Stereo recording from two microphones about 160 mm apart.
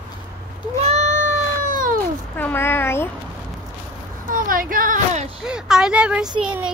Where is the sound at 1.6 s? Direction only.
55° right (ahead or behind).